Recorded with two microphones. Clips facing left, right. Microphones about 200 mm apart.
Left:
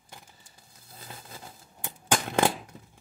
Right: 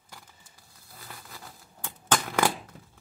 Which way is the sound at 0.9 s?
25° left (ahead or behind).